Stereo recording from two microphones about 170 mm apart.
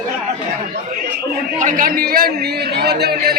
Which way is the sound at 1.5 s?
50° right (ahead or behind).